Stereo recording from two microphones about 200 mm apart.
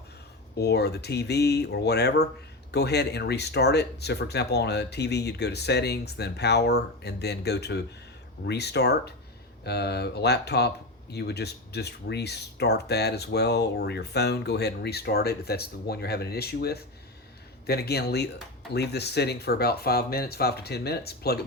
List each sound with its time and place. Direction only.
0.6 s speech: 55° left (ahead or behind)